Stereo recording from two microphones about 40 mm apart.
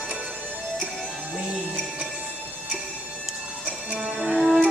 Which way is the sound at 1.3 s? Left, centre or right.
Right.